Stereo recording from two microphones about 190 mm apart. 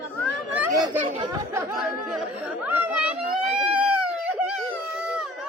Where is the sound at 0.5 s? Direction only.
15° right (ahead or behind).